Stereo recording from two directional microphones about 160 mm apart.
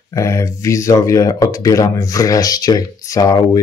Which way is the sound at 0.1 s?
20° left (ahead or behind).